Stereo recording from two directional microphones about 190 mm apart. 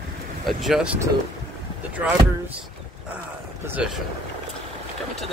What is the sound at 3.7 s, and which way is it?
Speech, 5° right (ahead or behind).